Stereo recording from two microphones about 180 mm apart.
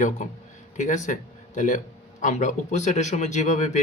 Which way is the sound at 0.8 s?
45° left (ahead or behind).